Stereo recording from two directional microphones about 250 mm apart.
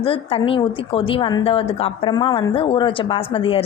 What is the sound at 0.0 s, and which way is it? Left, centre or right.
A woman's voice, left.